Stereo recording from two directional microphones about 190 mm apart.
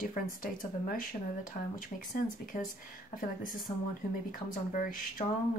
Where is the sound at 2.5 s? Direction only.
40° left (ahead or behind).